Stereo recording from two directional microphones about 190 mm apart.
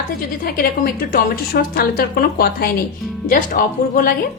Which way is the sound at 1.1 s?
50° left (ahead or behind).